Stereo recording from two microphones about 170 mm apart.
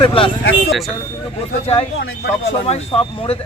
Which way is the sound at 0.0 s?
30° left (ahead or behind).